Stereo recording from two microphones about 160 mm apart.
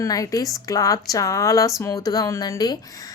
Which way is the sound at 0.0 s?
20° left (ahead or behind).